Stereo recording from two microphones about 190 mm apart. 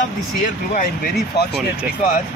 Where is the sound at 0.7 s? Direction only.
55° left (ahead or behind).